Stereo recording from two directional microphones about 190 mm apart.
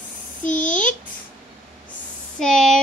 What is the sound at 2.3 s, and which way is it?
Speech, centre (ahead or behind).